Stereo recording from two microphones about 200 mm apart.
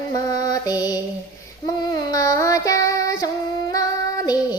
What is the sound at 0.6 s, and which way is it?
Music, 20° left (ahead or behind).